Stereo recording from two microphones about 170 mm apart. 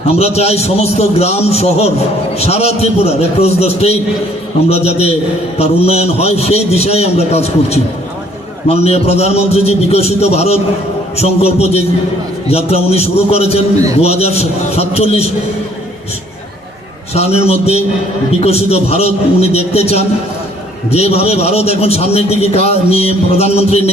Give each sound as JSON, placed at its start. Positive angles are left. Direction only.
{"t": 0.1, "sound": "a man's voice", "side_deg": 35}
{"t": 17.2, "sound": "a man's voice", "side_deg": 35}